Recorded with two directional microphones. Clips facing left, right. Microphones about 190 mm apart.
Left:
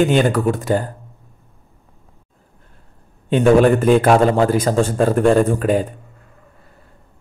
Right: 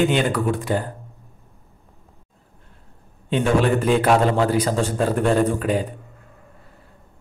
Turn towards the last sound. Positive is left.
turn(degrees=45)  # may be behind; listen again after turning